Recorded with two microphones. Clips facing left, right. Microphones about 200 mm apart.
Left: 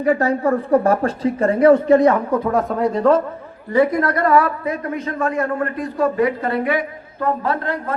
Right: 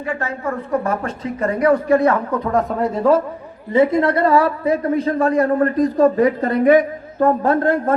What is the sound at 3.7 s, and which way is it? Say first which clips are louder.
A man's voice: right 2 dB; 25° right (ahead or behind).